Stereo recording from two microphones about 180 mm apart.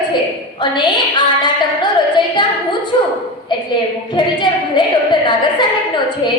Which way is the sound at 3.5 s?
25° left (ahead or behind).